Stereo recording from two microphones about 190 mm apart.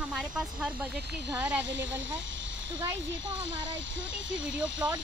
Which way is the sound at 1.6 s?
70° right (ahead or behind).